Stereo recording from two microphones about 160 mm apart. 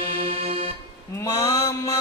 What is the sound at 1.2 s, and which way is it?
Mantra, 20° left (ahead or behind).